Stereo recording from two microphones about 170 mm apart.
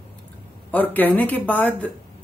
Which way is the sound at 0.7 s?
10° left (ahead or behind).